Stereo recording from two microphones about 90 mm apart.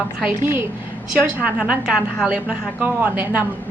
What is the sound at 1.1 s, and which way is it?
A woman's voice, 15° right (ahead or behind).